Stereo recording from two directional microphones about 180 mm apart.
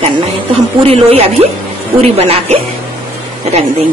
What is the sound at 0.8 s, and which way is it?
A woman's voice, 35° right (ahead or behind).